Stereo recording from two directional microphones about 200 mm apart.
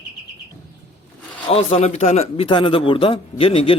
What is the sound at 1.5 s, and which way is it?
A man's voice, 30° left (ahead or behind).